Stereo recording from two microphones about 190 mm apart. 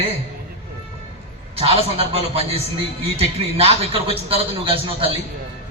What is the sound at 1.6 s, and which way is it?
A man's voice, 30° right (ahead or behind).